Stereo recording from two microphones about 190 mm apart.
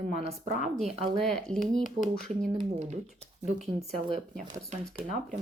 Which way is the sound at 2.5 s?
35° right (ahead or behind).